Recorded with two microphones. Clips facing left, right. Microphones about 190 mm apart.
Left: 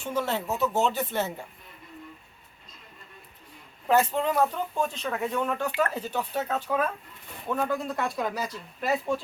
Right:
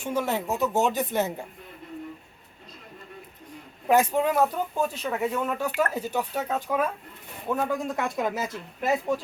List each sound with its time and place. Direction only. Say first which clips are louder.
0.0 s speech: right 2 dB; 10° right (ahead or behind)
3.8 s speech: right 2 dB; 10° right (ahead or behind)
8.9 s speech: right 2 dB; 10° right (ahead or behind)